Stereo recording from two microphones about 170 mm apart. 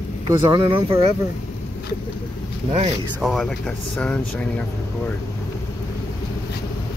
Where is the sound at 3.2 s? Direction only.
Centre (ahead or behind).